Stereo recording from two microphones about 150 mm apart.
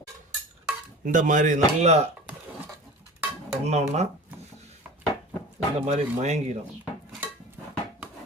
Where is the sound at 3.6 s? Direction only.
45° right (ahead or behind).